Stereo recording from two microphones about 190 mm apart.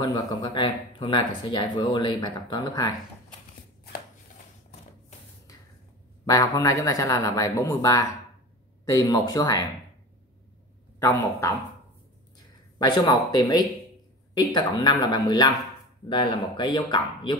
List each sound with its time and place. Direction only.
0.0 s speech: 20° left (ahead or behind)
6.2 s speech: 15° left (ahead or behind)
11.0 s speech: 15° left (ahead or behind)
12.7 s speech: 20° left (ahead or behind)